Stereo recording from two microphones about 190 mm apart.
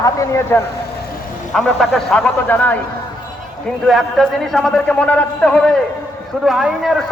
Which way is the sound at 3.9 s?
Centre (ahead or behind).